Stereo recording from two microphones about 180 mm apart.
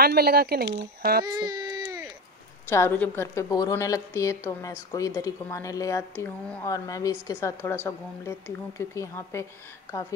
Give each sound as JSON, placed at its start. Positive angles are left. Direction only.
{"t": 0.0, "sound": "speech", "side_deg": -60}
{"t": 1.2, "sound": "baby cry", "side_deg": -20}
{"t": 2.7, "sound": "a woman's voice", "side_deg": 10}